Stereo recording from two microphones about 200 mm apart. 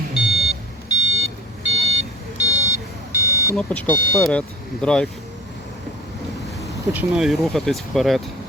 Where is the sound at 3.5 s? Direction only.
5° left (ahead or behind).